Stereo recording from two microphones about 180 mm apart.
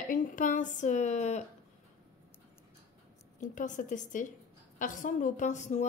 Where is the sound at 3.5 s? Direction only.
45° left (ahead or behind).